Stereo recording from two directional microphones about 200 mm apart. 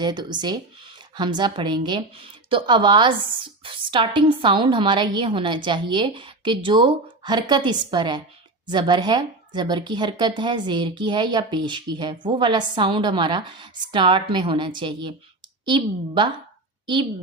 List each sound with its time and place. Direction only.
0.0 s a woman's voice: 20° right (ahead or behind)